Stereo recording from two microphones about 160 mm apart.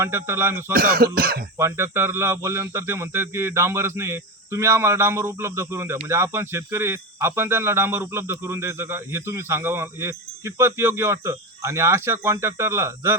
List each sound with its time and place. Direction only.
0.0 s speech: 15° right (ahead or behind)
0.7 s speech: 65° right (ahead or behind)
1.5 s speech: 15° right (ahead or behind)